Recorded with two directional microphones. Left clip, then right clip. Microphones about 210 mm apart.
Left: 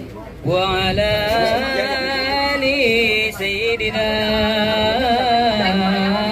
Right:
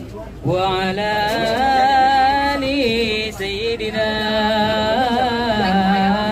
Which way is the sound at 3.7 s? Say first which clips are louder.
Right 1 dB; 5° right (ahead or behind).